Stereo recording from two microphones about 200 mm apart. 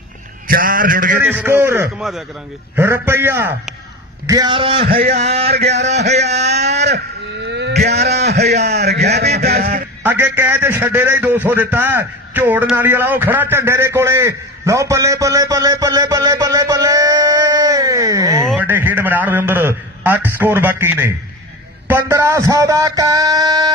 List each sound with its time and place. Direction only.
0.5 s a man's voice: 45° right (ahead or behind)
1.2 s music: 10° right (ahead or behind)
4.3 s a man's voice: 20° right (ahead or behind)
4.8 s a man's voice: 50° right (ahead or behind)
6.3 s a sound: 35° right (ahead or behind)
7.4 s a sound: 60° right (ahead or behind)
10.0 s a man's voice: 10° right (ahead or behind)
21.8 s music: 15° right (ahead or behind)